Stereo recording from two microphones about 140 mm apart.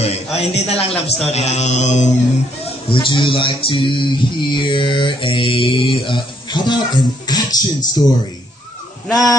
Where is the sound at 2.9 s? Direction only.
35° left (ahead or behind).